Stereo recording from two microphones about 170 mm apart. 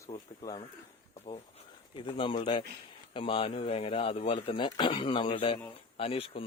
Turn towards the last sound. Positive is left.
turn(degrees=35)  # may be behind; listen again after turning